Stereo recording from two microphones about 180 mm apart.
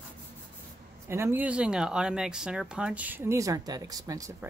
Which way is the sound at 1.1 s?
15° right (ahead or behind).